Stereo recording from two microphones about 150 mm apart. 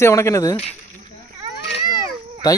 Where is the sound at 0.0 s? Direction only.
20° left (ahead or behind).